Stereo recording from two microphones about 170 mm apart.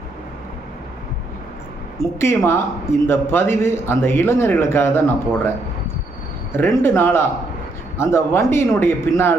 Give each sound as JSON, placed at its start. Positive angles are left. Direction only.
{"t": 2.0, "sound": "a man's voice", "side_deg": 15}
{"t": 6.5, "sound": "a man's voice", "side_deg": 15}